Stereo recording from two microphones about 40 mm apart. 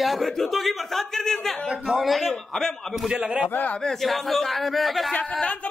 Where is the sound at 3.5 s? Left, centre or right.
Left.